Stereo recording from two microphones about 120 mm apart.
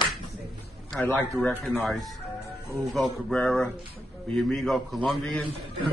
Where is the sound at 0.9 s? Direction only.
10° left (ahead or behind).